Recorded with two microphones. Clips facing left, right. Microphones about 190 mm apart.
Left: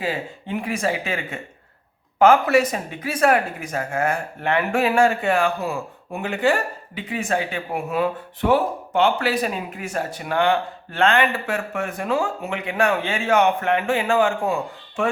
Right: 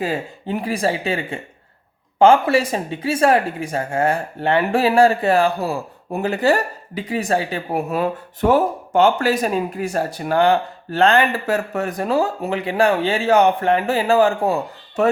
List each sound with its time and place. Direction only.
0.0 s speech: 40° right (ahead or behind)